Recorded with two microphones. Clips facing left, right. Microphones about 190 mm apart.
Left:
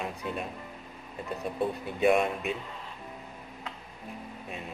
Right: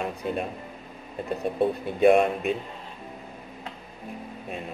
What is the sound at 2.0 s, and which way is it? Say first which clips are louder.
Speech: right 6 dB; 55° right (ahead or behind).